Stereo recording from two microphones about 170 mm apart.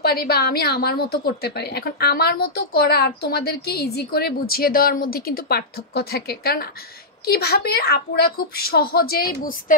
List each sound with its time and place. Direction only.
0.0 s a woman's voice: 65° left (ahead or behind)